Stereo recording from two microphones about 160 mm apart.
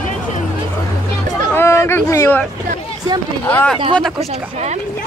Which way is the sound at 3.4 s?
5° left (ahead or behind).